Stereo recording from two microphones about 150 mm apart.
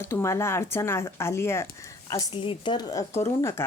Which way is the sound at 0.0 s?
20° left (ahead or behind).